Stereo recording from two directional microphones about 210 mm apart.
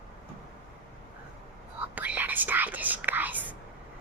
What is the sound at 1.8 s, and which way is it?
Whispering, 10° right (ahead or behind).